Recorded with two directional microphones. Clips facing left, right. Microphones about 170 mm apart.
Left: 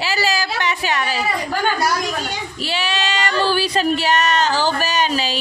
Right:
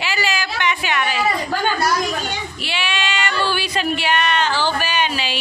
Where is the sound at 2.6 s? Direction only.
40° left (ahead or behind).